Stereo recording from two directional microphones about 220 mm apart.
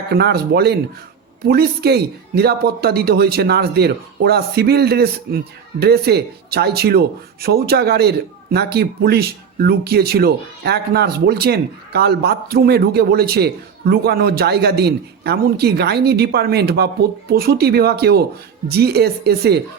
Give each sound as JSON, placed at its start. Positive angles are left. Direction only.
{"t": 0.1, "sound": "speech", "side_deg": -45}